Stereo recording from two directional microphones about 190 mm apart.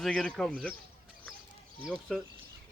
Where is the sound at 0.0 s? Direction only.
5° left (ahead or behind).